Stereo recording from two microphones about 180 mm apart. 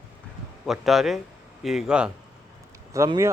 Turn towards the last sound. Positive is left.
turn(degrees=-15)  # may be behind; listen again after turning